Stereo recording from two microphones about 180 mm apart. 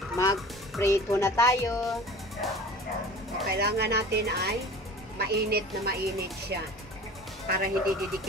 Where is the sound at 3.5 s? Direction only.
65° right (ahead or behind).